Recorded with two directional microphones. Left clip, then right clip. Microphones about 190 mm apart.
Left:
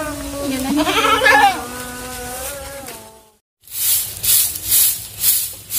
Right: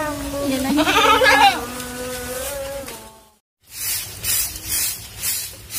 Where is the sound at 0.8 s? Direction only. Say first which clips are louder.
Even; 35° right (ahead or behind).